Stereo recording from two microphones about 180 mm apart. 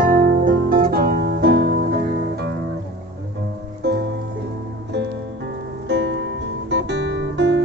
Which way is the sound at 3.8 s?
65° right (ahead or behind).